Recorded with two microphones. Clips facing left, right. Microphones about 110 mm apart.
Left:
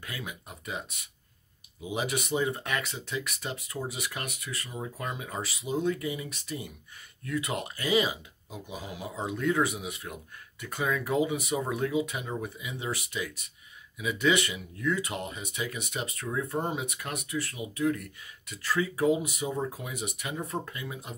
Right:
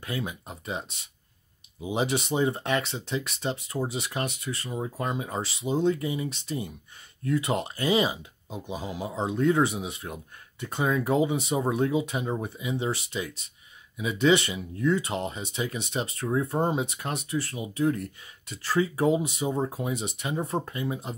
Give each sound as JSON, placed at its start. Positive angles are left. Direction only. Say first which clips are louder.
{"t": 0.0, "sound": "speech", "louder": "right 7 dB", "side_deg": -30}